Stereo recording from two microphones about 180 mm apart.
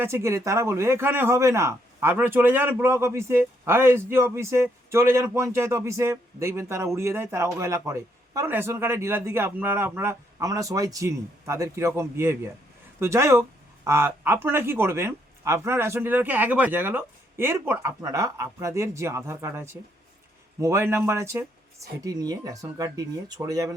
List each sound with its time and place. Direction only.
0.0 s a man's voice: 15° right (ahead or behind)